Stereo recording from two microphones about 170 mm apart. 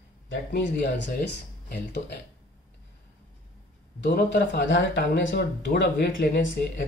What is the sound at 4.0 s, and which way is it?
Speech, 80° left.